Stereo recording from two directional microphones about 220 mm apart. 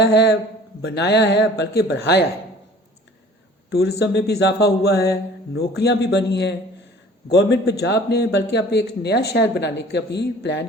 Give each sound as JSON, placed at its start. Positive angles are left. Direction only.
{"t": 0.0, "sound": "a man's voice", "side_deg": 50}
{"t": 3.7, "sound": "a man's voice", "side_deg": 45}